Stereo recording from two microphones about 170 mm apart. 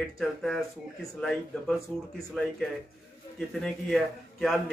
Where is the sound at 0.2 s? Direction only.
Centre (ahead or behind).